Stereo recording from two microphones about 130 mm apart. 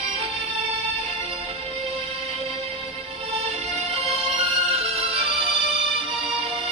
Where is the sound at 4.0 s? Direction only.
50° right (ahead or behind).